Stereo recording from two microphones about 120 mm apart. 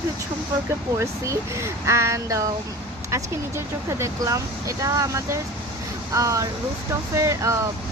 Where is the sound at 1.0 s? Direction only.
25° right (ahead or behind).